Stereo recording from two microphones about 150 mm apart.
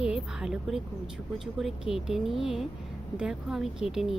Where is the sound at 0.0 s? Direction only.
5° right (ahead or behind).